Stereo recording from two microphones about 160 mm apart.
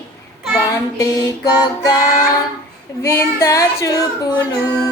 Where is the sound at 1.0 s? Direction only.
20° left (ahead or behind).